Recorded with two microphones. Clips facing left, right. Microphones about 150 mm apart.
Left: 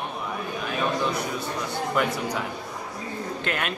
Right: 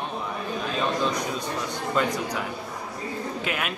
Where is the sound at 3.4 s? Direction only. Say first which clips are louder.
Left 2 dB; 5° right (ahead or behind).